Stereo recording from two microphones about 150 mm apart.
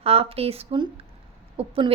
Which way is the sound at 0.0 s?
40° right (ahead or behind).